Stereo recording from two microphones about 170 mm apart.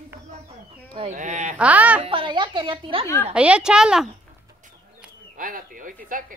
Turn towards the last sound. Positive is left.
turn(degrees=-50)  # may be behind; listen again after turning